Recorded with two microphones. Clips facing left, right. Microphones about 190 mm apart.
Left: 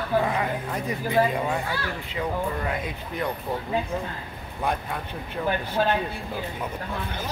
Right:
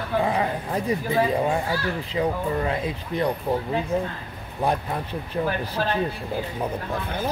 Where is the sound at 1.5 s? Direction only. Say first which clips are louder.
Right 4 dB; 35° right (ahead or behind).